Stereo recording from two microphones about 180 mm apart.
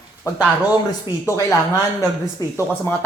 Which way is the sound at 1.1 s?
25° left (ahead or behind).